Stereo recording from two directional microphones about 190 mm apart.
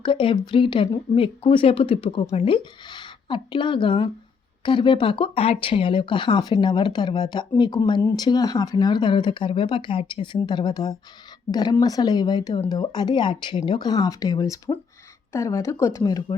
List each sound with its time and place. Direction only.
0.0 s speech: 25° left (ahead or behind)